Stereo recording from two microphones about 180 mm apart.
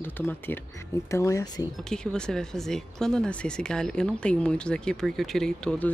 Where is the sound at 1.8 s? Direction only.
5° left (ahead or behind).